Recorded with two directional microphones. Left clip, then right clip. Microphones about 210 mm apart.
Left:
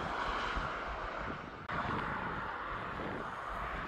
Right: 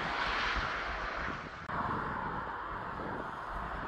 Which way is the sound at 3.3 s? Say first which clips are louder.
Even; 65° left (ahead or behind).